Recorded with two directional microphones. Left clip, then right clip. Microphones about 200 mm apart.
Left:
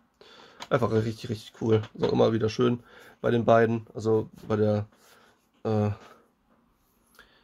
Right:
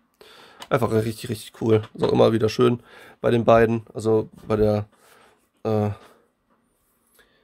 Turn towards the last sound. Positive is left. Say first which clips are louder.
# left 3 dB
turn(degrees=-5)  # may be behind; listen again after turning